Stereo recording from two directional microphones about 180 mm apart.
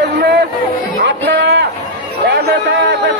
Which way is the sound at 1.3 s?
75° right (ahead or behind).